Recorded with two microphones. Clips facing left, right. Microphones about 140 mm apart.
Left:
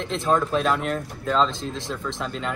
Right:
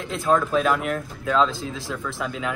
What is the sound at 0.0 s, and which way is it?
Speech, centre (ahead or behind).